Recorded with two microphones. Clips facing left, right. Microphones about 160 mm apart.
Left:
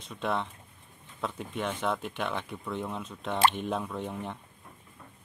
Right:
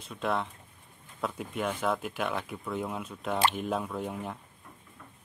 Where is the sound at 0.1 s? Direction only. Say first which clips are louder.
Right 1 dB; centre (ahead or behind).